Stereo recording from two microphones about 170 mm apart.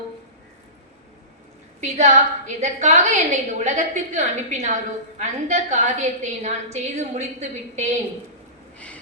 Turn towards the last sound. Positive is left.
turn(degrees=-40)  # may be behind; listen again after turning